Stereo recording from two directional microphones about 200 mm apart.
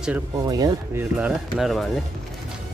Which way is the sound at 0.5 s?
20° right (ahead or behind).